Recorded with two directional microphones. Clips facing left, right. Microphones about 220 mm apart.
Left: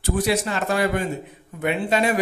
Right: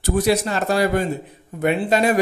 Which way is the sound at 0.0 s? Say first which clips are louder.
Right 3 dB; 40° right (ahead or behind).